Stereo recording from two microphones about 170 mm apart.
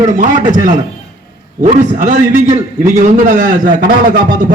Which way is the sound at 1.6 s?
45° right (ahead or behind).